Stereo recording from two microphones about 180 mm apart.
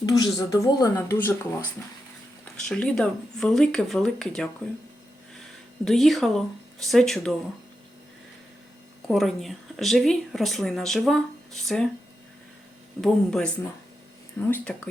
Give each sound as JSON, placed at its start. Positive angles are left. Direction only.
{"t": 0.0, "sound": "speech", "side_deg": 20}
{"t": 2.4, "sound": "speech", "side_deg": 5}
{"t": 5.8, "sound": "speech", "side_deg": 0}
{"t": 9.0, "sound": "speech", "side_deg": 0}
{"t": 13.0, "sound": "speech", "side_deg": 5}